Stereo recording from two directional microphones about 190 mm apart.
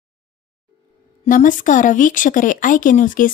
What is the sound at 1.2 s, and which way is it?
Speech, 45° left (ahead or behind).